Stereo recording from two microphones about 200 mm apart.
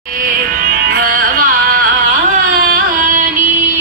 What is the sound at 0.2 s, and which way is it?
Music, 45° right (ahead or behind).